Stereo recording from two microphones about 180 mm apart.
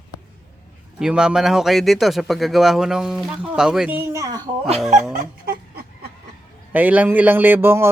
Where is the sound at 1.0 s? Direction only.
5° right (ahead or behind).